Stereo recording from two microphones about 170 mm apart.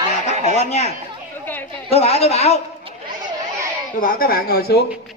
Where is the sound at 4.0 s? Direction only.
55° left (ahead or behind).